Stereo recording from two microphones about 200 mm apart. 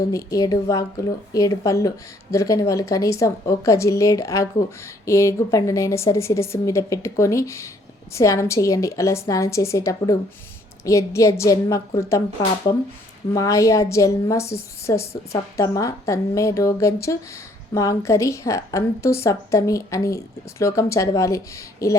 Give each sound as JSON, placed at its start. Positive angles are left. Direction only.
{"t": 0.1, "sound": "a woman's voice", "side_deg": 15}